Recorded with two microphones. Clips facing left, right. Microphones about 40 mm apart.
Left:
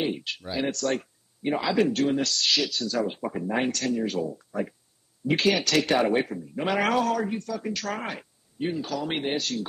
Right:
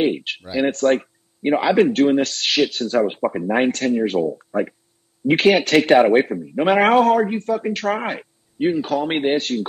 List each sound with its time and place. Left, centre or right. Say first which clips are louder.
0.0 s a man's voice: right 8 dB; right